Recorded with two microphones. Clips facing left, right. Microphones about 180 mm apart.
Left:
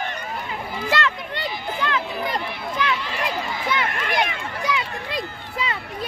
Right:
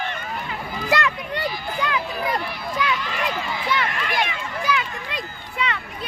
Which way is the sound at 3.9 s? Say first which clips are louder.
Left 1 dB; 50° left (ahead or behind).